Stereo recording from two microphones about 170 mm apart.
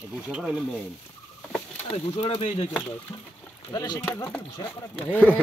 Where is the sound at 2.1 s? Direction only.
35° left (ahead or behind).